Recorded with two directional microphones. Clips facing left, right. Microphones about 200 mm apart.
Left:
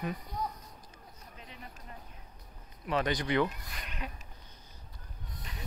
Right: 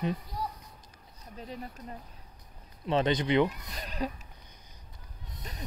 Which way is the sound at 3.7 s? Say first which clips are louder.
Right 8 dB; 35° right (ahead or behind).